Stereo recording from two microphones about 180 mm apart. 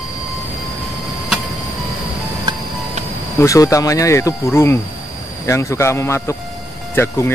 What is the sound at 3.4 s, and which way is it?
Speech, 20° left (ahead or behind).